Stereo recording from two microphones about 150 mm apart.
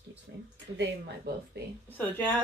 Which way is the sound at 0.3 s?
90° right.